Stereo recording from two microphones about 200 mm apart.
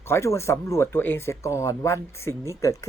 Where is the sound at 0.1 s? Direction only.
15° left (ahead or behind).